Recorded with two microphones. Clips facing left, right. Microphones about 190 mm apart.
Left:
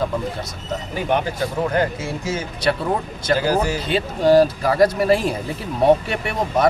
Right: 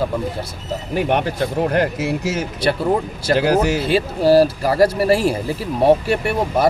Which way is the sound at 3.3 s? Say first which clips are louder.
Right 4 dB; 75° right (ahead or behind).